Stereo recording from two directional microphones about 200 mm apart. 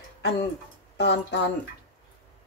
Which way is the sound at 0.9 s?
60° left (ahead or behind).